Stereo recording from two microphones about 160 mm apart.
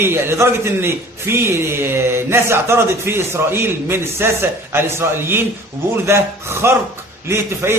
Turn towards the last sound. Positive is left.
turn(degrees=-15)  # may be behind; listen again after turning